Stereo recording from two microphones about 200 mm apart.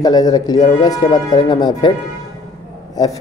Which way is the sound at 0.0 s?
20° left (ahead or behind).